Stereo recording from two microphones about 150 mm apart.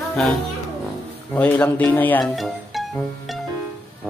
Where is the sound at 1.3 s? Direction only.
10° left (ahead or behind).